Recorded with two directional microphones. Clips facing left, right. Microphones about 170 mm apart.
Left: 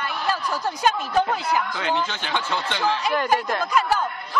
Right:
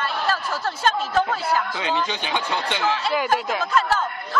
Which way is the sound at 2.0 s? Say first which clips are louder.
Right 1 dB; 15° right (ahead or behind).